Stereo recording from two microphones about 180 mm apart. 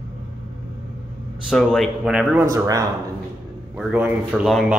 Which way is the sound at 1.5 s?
5° left (ahead or behind).